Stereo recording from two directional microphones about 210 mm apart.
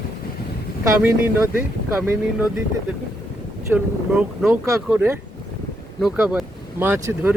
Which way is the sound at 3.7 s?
10° right (ahead or behind).